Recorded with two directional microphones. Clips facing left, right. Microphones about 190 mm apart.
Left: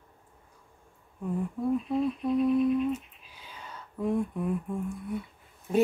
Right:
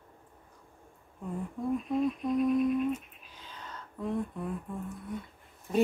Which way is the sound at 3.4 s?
10° left (ahead or behind).